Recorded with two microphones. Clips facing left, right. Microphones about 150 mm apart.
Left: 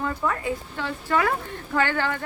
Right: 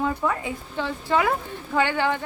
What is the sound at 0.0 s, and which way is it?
Speech, 15° right (ahead or behind).